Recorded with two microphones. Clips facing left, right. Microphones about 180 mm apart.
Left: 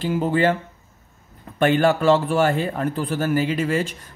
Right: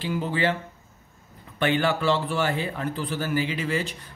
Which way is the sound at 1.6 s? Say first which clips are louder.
Left 6 dB; 45° left (ahead or behind).